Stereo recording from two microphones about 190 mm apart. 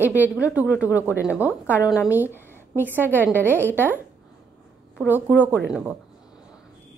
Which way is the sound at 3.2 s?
10° left (ahead or behind).